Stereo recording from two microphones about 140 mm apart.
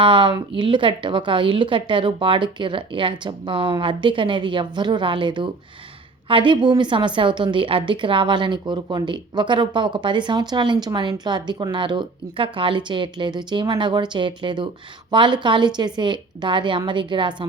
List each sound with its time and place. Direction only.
0.0 s a woman's voice: 35° right (ahead or behind)